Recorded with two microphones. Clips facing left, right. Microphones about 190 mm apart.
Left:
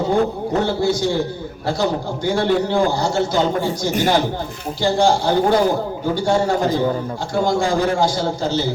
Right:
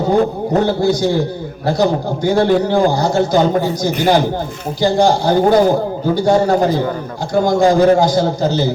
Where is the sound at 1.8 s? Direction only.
40° right (ahead or behind).